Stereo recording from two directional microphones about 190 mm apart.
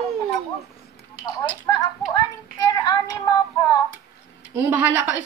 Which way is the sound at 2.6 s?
20° left (ahead or behind).